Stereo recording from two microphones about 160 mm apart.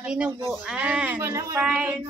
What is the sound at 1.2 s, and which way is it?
Speech, 20° right (ahead or behind).